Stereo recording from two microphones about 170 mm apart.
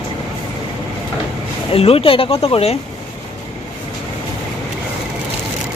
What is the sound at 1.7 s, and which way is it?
Speech, 35° left (ahead or behind).